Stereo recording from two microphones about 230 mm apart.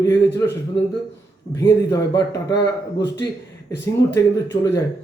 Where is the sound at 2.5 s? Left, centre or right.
Left.